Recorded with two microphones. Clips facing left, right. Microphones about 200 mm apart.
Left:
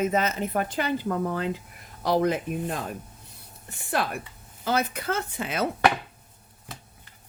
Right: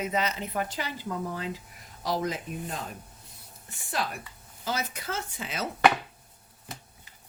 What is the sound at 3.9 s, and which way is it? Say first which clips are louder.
A woman's voice: left 5 dB; 60° left (ahead or behind).